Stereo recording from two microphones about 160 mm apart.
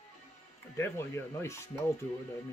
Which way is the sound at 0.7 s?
15° left (ahead or behind).